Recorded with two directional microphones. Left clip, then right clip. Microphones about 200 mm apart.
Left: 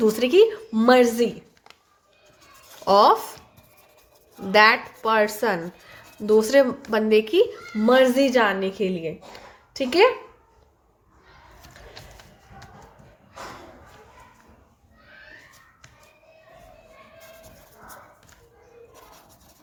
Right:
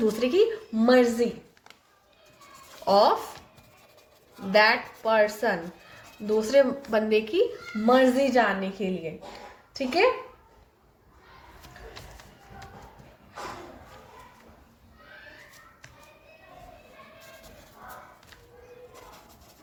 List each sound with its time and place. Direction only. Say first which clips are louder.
0.0 s a woman's voice: left 6 dB; 35° left (ahead or behind)
2.8 s a woman's voice: left 4 dB; 40° left (ahead or behind)
4.5 s a woman's voice: left 4 dB; 40° left (ahead or behind)
7.9 s a woman's voice: left 3 dB; 45° left (ahead or behind)